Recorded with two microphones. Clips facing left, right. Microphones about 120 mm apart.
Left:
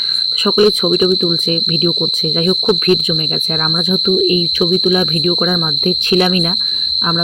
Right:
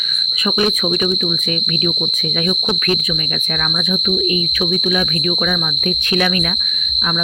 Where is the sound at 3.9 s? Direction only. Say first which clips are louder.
Left 6 dB; 30° left (ahead or behind).